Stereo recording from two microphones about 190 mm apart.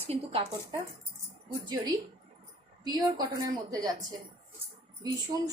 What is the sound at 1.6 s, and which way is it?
A woman's voice, 20° right (ahead or behind).